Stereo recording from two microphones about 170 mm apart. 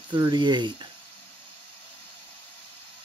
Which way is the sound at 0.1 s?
25° right (ahead or behind).